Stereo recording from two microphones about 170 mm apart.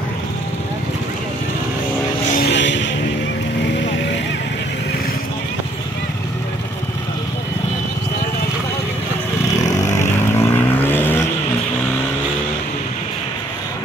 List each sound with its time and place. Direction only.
2.3 s music: 80° left
9.6 s vehicle: 20° left (ahead or behind)